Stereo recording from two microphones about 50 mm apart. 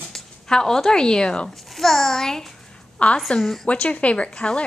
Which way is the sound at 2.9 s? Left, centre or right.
Left.